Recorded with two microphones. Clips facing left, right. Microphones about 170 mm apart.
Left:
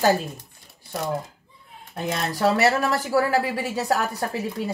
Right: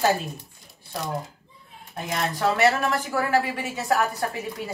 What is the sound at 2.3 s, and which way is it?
Speech, 35° left (ahead or behind).